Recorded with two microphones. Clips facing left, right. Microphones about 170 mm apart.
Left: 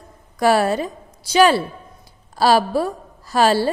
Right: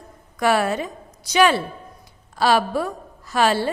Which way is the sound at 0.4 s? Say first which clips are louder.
Left 3 dB; 35° left (ahead or behind).